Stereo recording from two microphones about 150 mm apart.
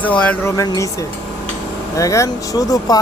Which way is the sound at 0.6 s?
20° left (ahead or behind).